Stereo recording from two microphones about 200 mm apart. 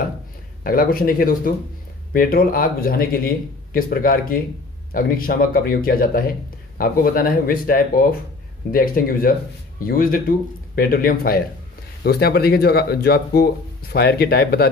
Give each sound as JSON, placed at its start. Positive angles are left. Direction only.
{"t": 0.7, "sound": "speech", "side_deg": 45}